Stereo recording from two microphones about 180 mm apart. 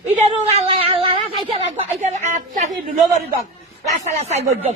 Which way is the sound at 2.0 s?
40° right (ahead or behind).